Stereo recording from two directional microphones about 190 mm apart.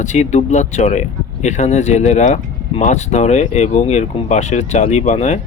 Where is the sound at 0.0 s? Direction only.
40° left (ahead or behind).